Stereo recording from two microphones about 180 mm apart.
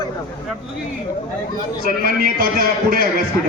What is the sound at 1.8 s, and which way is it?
A man's voice, 55° right (ahead or behind).